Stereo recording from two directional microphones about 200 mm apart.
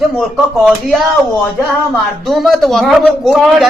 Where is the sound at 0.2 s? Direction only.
Centre (ahead or behind).